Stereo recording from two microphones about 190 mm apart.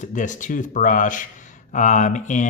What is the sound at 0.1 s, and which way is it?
Speech, 40° left (ahead or behind).